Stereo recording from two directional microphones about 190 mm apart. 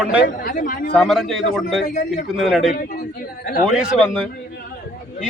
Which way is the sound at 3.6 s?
5° right (ahead or behind).